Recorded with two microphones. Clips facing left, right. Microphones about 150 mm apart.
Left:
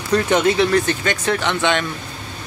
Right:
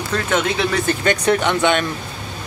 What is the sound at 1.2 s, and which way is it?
Speech, 15° right (ahead or behind).